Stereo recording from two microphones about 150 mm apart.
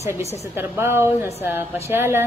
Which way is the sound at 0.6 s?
15° right (ahead or behind).